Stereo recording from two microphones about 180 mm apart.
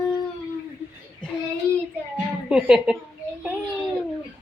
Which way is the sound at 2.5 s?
5° right (ahead or behind).